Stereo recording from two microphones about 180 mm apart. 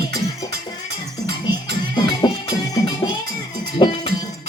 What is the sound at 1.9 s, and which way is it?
Music, 25° left (ahead or behind).